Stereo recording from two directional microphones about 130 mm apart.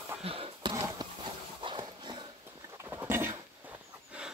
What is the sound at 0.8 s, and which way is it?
Horse, 35° right (ahead or behind).